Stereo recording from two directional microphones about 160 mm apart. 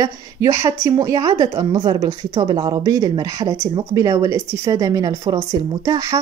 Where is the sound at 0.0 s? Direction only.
20° right (ahead or behind).